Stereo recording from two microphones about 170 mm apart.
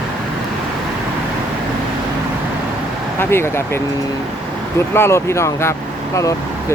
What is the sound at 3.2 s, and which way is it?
Speech, 15° left (ahead or behind).